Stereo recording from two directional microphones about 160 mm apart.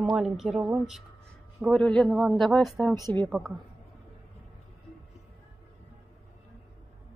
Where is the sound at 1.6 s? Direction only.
5° left (ahead or behind).